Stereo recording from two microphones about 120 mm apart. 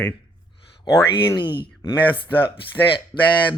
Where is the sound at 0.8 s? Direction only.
35° left (ahead or behind).